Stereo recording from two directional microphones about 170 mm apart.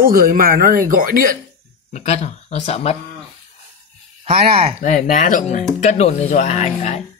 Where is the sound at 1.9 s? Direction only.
40° left (ahead or behind).